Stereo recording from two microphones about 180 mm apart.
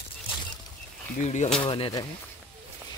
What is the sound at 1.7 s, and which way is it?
Speech, 25° left (ahead or behind).